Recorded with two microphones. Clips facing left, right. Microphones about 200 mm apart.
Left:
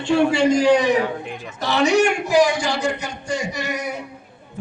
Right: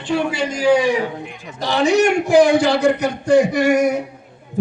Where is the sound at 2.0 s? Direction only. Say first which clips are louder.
Right 4 dB; 55° right (ahead or behind).